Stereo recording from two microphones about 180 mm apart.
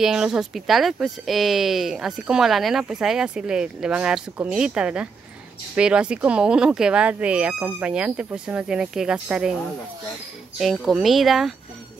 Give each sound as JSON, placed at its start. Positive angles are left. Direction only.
{"t": 0.0, "sound": "speech", "side_deg": -5}
{"t": 10.6, "sound": "speech", "side_deg": 0}